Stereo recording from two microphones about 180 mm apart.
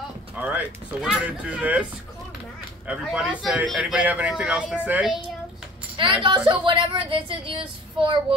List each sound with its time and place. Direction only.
0.4 s a man's voice: 5° right (ahead or behind)
2.9 s a man's voice: 5° right (ahead or behind)
5.9 s a woman's voice: 25° right (ahead or behind)